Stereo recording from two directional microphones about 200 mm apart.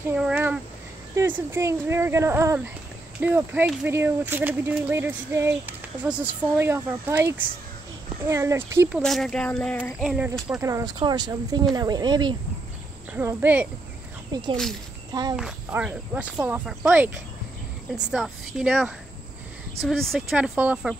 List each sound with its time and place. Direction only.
0.1 s speech: 10° right (ahead or behind)
9.0 s speech: centre (ahead or behind)
10.0 s speech: 5° right (ahead or behind); by 12.4 s 20° right (ahead or behind)
13.1 s speech: 10° right (ahead or behind)
14.3 s speech: 20° right (ahead or behind)
15.3 s speech: 5° right (ahead or behind)